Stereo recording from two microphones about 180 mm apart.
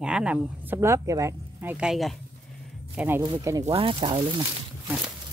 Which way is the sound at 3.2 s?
20° right (ahead or behind).